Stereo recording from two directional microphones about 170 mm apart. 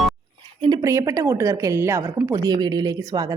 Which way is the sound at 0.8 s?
20° right (ahead or behind).